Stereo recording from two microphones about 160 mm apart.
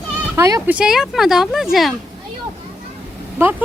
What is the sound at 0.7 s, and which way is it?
Speech, 5° right (ahead or behind).